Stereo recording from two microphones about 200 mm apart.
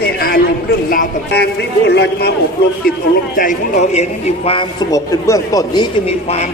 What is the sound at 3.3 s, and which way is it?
A man's voice, 40° left (ahead or behind).